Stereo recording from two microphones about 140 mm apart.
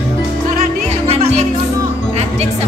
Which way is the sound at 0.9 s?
50° right (ahead or behind).